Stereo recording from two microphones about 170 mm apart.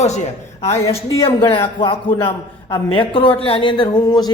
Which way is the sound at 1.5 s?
30° left (ahead or behind).